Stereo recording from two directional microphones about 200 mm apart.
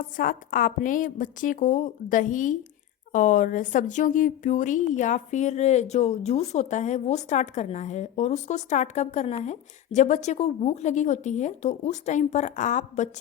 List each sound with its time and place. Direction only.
0.2 s speech: 45° left (ahead or behind)